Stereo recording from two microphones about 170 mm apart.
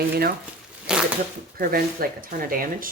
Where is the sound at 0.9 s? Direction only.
5° right (ahead or behind).